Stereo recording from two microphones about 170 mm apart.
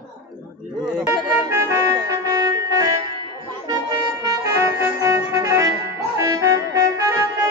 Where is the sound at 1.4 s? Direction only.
15° right (ahead or behind).